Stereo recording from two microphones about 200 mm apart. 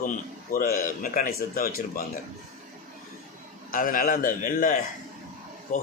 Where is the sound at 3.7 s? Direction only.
40° left (ahead or behind).